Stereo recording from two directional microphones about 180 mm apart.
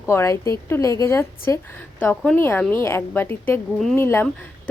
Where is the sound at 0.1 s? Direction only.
15° left (ahead or behind).